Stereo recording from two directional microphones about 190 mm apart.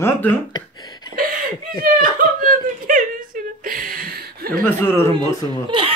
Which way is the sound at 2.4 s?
45° right (ahead or behind).